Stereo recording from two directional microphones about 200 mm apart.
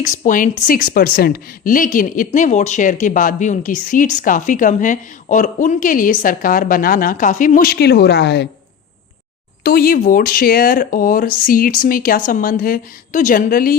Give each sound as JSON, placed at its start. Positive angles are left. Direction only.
{"t": 0.0, "sound": "a woman's voice", "side_deg": 40}
{"t": 9.6, "sound": "speech", "side_deg": 45}